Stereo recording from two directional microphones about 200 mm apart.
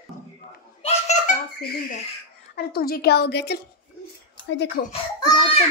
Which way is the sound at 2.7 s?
50° left (ahead or behind).